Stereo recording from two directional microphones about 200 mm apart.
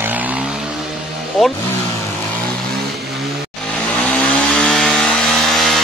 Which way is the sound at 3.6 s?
5° left (ahead or behind).